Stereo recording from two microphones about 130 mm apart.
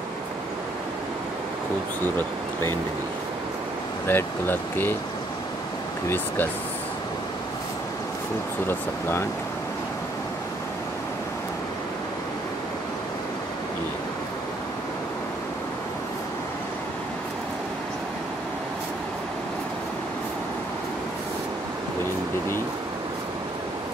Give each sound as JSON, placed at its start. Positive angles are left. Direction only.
{"t": 4.1, "sound": "speech", "side_deg": 15}
{"t": 6.0, "sound": "speech", "side_deg": 15}